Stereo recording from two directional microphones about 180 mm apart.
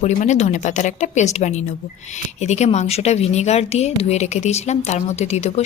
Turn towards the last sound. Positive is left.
turn(degrees=35)  # may be behind; listen again after turning